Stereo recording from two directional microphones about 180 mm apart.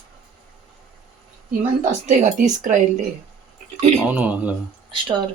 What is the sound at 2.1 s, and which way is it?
Speech, 45° right (ahead or behind).